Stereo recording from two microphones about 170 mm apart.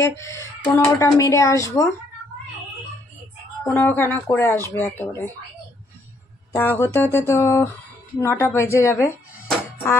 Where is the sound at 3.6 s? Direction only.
10° left (ahead or behind).